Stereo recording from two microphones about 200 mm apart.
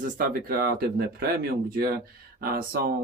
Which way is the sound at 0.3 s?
50° right (ahead or behind).